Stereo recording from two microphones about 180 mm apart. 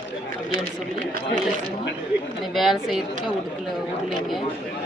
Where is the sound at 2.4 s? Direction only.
Centre (ahead or behind).